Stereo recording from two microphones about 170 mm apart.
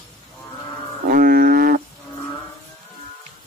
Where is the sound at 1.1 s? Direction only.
60° right (ahead or behind).